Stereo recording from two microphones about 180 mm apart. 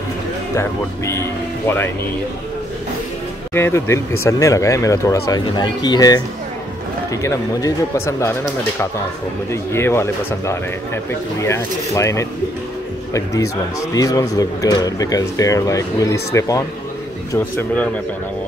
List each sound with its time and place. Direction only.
0.6 s speech: 15° left (ahead or behind)
3.5 s speech: 15° left (ahead or behind)